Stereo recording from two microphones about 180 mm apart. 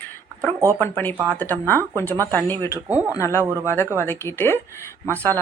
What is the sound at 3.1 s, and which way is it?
Speech, 15° left (ahead or behind).